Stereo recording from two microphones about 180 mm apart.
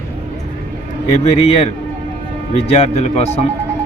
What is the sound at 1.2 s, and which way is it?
Speech, 30° left (ahead or behind).